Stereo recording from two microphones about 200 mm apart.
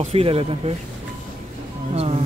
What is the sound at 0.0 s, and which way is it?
Speech, 30° right (ahead or behind).